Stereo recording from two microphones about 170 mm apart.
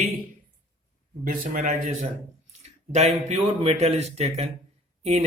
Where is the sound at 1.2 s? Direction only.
55° right (ahead or behind).